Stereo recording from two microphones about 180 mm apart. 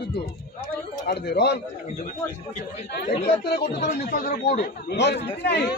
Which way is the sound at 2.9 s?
70° left (ahead or behind).